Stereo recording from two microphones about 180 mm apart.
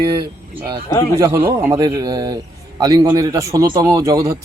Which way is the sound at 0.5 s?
20° right (ahead or behind).